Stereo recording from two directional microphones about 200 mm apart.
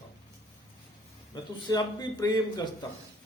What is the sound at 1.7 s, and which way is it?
A man's voice, 20° left (ahead or behind).